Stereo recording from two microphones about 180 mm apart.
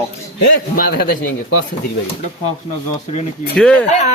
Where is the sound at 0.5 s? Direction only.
55° left (ahead or behind).